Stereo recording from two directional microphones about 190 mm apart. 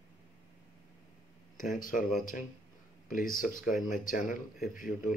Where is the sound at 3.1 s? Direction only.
45° left (ahead or behind).